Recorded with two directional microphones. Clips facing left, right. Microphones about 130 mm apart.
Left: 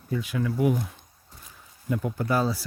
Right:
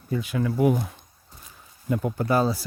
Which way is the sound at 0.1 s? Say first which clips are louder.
Right 2 dB; 30° right (ahead or behind).